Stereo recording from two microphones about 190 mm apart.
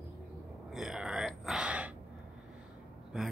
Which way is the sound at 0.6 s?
Centre (ahead or behind).